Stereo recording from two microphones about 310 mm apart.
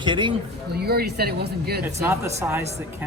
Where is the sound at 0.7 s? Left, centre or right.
Right.